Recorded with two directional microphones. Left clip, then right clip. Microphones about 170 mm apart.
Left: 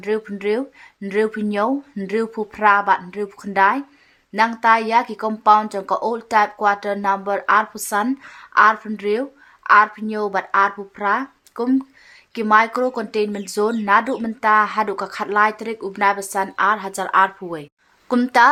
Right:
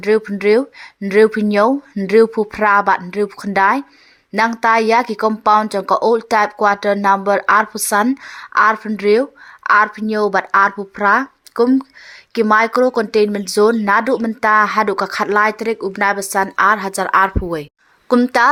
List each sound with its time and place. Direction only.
0.0 s a woman's voice: 35° right (ahead or behind)